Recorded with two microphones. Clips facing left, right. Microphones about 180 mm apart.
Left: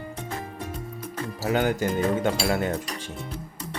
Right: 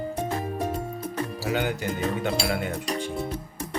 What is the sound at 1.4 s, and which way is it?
Speech, 45° left (ahead or behind).